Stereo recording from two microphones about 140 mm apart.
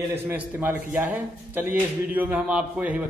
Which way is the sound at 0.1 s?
15° right (ahead or behind).